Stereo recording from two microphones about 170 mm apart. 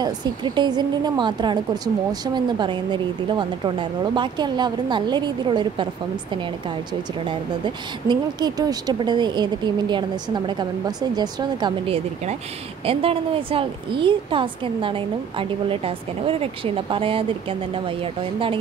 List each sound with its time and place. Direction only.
0.0 s speech: 25° right (ahead or behind)
7.2 s a woman's voice: 25° right (ahead or behind)